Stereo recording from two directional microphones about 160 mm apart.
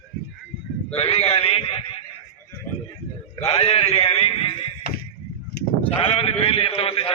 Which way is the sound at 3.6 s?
35° left (ahead or behind).